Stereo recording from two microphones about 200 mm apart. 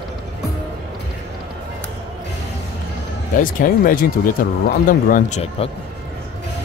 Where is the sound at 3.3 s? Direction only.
45° left (ahead or behind).